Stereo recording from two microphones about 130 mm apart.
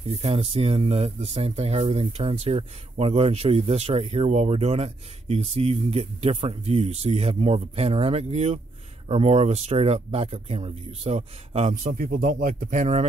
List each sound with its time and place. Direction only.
0.1 s speech: 45° right (ahead or behind)
11.8 s speech: 90° right; by 13.0 s 75° right (ahead or behind)